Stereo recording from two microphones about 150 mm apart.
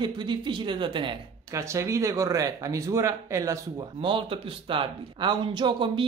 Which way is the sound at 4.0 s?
35° right (ahead or behind).